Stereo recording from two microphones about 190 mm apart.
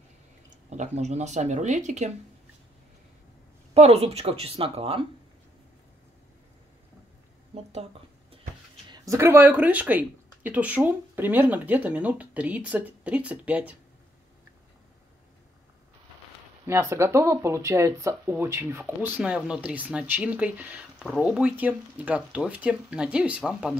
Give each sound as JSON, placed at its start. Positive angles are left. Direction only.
{"t": 0.7, "sound": "speech", "side_deg": -35}
{"t": 3.7, "sound": "speech", "side_deg": -35}
{"t": 7.5, "sound": "a sound", "side_deg": -30}
{"t": 8.9, "sound": "speech", "side_deg": -15}
{"t": 16.6, "sound": "speech", "side_deg": -15}